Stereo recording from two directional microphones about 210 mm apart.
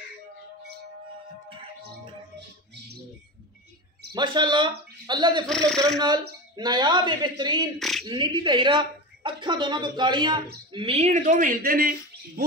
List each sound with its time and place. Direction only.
2.3 s music: 55° right (ahead or behind)
4.1 s speech: 20° right (ahead or behind)
5.5 s speech: 5° left (ahead or behind)
5.9 s a woman's voice: 20° right (ahead or behind); by 12.4 s 40° right (ahead or behind)